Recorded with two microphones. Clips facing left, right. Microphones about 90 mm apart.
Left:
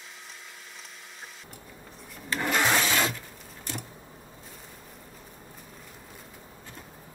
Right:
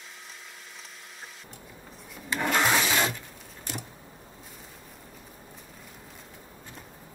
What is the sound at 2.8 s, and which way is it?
Shatter, 15° right (ahead or behind).